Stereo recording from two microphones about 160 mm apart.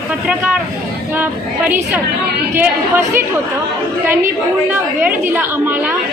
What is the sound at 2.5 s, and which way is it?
Speech, 15° right (ahead or behind).